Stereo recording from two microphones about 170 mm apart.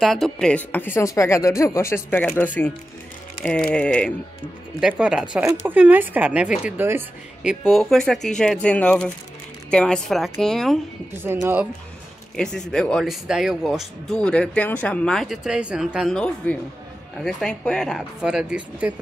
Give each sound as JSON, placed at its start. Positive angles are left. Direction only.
{"t": 0.0, "sound": "speech", "side_deg": 0}
{"t": 4.7, "sound": "speech", "side_deg": -5}
{"t": 11.2, "sound": "speech", "side_deg": -15}
{"t": 12.4, "sound": "speech", "side_deg": 5}